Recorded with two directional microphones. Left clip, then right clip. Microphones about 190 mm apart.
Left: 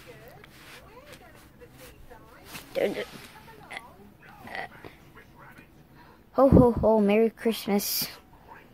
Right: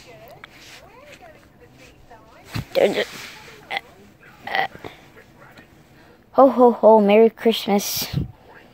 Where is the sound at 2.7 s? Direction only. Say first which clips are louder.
Right 10 dB; 20° right (ahead or behind).